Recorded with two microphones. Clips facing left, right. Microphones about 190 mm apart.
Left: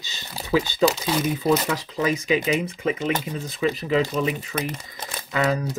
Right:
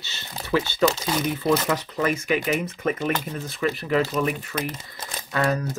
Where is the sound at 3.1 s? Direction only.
15° left (ahead or behind).